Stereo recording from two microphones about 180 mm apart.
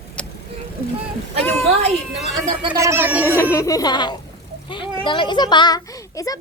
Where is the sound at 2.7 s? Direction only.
15° right (ahead or behind).